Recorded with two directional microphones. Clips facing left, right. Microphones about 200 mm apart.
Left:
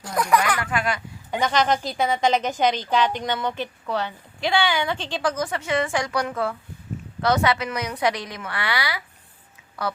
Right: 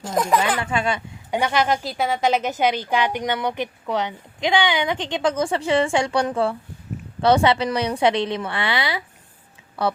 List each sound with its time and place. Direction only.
0.0 s a woman's voice: 25° right (ahead or behind)
1.3 s a woman's voice: 10° right (ahead or behind)